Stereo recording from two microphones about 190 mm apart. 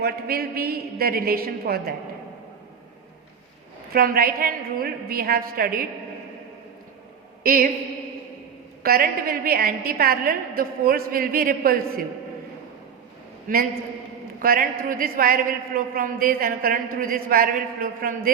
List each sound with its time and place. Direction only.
0.0 s a man's voice: 55° right (ahead or behind)
3.9 s a man's voice: 50° right (ahead or behind)
7.4 s a woman's voice: 50° right (ahead or behind)
8.8 s a man's voice: 50° right (ahead or behind)
13.5 s a man's voice: 45° right (ahead or behind)